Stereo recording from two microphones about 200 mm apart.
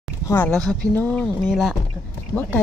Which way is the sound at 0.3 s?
10° left (ahead or behind).